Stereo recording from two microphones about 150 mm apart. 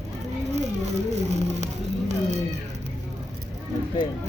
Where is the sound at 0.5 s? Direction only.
50° right (ahead or behind).